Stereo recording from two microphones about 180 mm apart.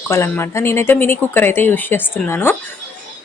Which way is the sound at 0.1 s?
15° left (ahead or behind).